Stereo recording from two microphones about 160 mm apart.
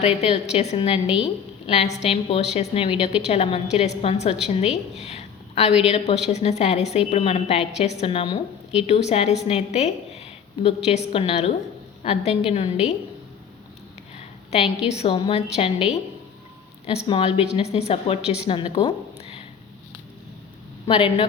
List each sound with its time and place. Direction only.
0.0 s a woman's voice: 40° left (ahead or behind)
14.2 s a sound: 40° left (ahead or behind)
14.8 s a woman's voice: 40° left (ahead or behind)
17.1 s a woman's voice: 35° left (ahead or behind)
20.8 s a woman's voice: 35° left (ahead or behind)